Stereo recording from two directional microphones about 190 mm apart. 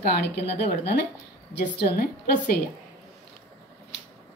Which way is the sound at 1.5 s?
60° left (ahead or behind).